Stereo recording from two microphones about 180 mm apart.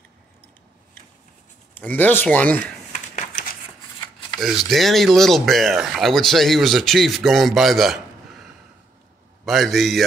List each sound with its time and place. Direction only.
1.8 s speech: 10° left (ahead or behind)
2.9 s a sound: 45° left (ahead or behind)
4.4 s speech: centre (ahead or behind)
9.4 s speech: centre (ahead or behind)